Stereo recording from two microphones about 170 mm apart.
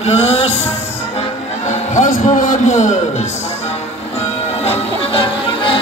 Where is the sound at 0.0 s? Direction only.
35° left (ahead or behind).